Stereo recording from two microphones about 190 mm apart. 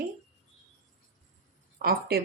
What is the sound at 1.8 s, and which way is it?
Speech, 55° right (ahead or behind).